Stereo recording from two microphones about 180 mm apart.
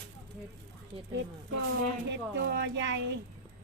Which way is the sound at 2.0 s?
70° right (ahead or behind).